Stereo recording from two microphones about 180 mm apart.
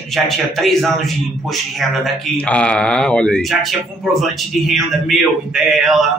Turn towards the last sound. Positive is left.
turn(degrees=0)  # may be behind; listen again after turning